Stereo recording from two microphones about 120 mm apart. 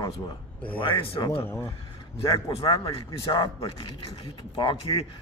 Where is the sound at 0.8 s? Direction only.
45° left (ahead or behind).